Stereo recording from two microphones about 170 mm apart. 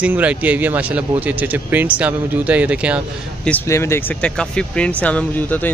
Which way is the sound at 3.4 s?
10° left (ahead or behind).